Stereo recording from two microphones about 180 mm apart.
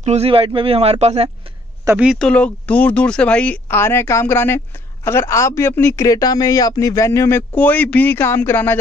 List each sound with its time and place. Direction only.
0.0 s a man's voice: 35° right (ahead or behind)
1.9 s a man's voice: 5° right (ahead or behind); by 8.7 s 10° left (ahead or behind)